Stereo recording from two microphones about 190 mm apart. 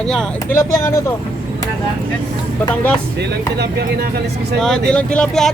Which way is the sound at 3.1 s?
60° right (ahead or behind).